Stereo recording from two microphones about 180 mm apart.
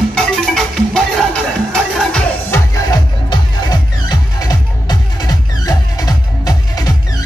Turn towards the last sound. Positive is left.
turn(degrees=20)  # may be behind; listen again after turning